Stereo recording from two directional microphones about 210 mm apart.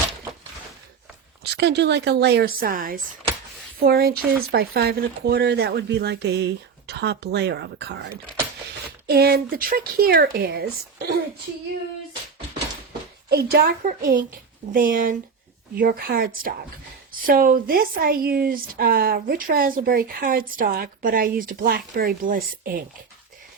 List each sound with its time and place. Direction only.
1.5 s speech: 55° right (ahead or behind)
9.0 s speech: 45° right (ahead or behind)
13.3 s speech: 50° right (ahead or behind)